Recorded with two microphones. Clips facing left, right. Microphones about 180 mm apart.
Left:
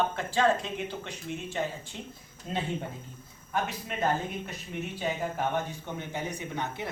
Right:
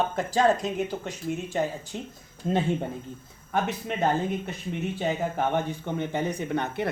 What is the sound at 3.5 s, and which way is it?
Speech, 50° right (ahead or behind).